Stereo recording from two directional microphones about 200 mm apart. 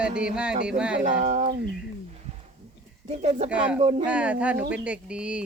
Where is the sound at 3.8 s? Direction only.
30° right (ahead or behind).